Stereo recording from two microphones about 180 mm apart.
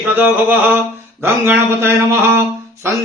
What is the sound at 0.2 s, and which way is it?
Speech, 10° right (ahead or behind).